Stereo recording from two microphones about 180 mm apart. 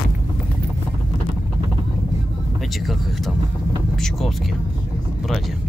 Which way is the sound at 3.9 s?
Centre (ahead or behind).